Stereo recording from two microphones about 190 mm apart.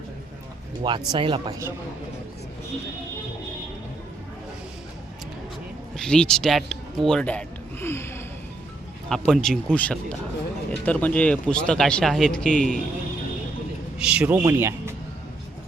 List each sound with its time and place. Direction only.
0.8 s speech: 25° right (ahead or behind)
6.0 s speech: 5° left (ahead or behind)
9.0 s speech: centre (ahead or behind)
14.0 s speech: 5° right (ahead or behind)